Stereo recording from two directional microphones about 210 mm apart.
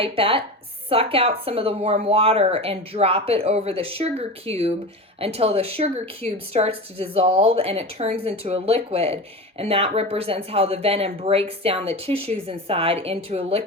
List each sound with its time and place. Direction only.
0.0 s speech: 25° right (ahead or behind)